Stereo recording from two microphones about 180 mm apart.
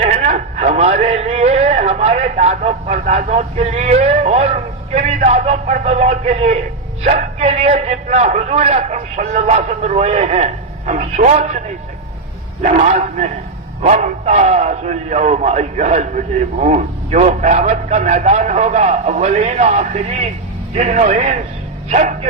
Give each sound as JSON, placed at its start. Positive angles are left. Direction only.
{"t": 0.3, "sound": "a man's voice", "side_deg": -40}
{"t": 12.6, "sound": "a man's voice", "side_deg": -40}